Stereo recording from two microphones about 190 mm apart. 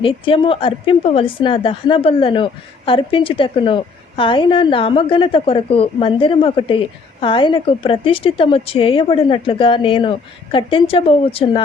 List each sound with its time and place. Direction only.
0.0 s a woman's voice: 30° left (ahead or behind)